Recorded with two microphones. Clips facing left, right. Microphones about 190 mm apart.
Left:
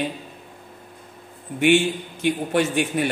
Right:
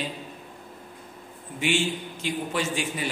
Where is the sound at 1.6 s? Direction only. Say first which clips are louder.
Left 8 dB; 60° left (ahead or behind).